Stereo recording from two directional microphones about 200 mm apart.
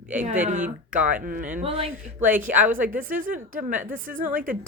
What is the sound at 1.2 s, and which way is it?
Speech, 45° right (ahead or behind).